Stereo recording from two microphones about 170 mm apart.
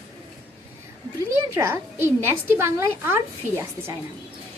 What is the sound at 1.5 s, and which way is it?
A woman's voice, 15° right (ahead or behind).